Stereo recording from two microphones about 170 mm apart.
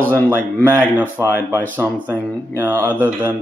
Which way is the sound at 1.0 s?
15° right (ahead or behind).